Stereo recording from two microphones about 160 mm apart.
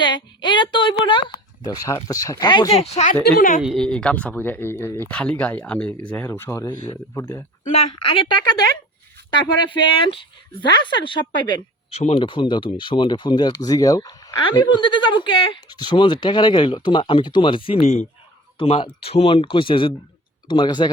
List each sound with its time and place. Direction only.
0.0 s speech: 30° left (ahead or behind)
2.7 s speech: 40° left (ahead or behind)
3.2 s a woman's voice: 60° left (ahead or behind)
3.6 s speech: centre (ahead or behind); by 7.4 s 15° left (ahead or behind)
7.6 s speech: 45° left (ahead or behind)
9.6 s speech: 30° left (ahead or behind)